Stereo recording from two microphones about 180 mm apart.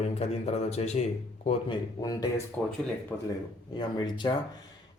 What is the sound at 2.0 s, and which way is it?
Speech, 20° left (ahead or behind).